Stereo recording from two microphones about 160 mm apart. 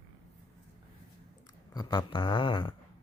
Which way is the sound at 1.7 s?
25° left (ahead or behind).